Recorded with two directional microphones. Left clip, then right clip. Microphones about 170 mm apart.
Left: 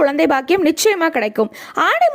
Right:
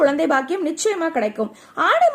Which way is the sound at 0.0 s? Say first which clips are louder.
Left 2 dB; 35° left (ahead or behind).